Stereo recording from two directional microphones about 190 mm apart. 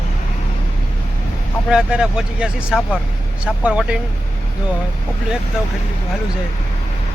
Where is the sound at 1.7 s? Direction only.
5° right (ahead or behind).